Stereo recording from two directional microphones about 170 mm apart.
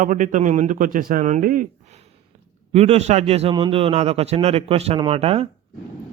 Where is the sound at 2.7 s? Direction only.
40° right (ahead or behind).